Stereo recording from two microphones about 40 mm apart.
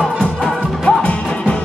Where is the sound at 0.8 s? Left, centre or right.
Left.